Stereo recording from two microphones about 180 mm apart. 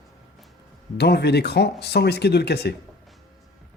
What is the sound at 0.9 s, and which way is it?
Speech, 65° left (ahead or behind).